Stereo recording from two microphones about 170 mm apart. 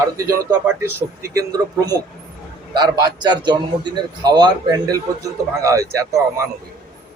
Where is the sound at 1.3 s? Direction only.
20° right (ahead or behind).